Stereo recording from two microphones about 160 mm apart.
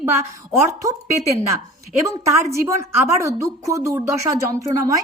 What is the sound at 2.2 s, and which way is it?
A woman's voice, 20° right (ahead or behind).